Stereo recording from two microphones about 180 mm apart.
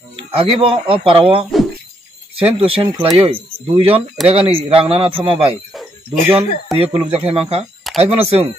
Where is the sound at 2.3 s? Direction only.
30° right (ahead or behind).